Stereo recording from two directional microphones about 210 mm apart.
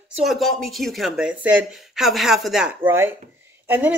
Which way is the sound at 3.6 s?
10° right (ahead or behind).